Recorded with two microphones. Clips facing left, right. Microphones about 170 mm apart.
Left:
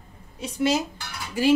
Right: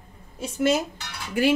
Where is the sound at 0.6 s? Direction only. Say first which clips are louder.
Right 1 dB; 55° right (ahead or behind).